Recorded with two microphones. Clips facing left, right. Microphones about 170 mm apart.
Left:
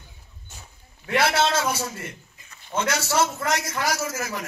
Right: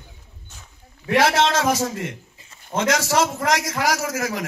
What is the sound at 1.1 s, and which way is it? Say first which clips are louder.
A man's voice: right 4 dB; 90° right.